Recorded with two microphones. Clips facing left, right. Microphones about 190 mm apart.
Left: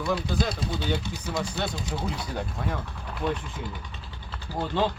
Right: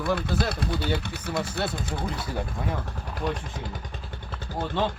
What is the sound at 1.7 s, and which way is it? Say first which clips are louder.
Speech: even; 55° right (ahead or behind).